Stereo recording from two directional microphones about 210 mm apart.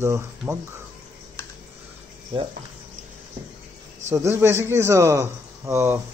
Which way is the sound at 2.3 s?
20° right (ahead or behind).